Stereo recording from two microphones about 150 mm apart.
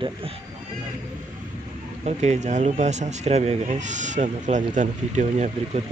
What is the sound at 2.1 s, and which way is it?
Speech, 50° right (ahead or behind).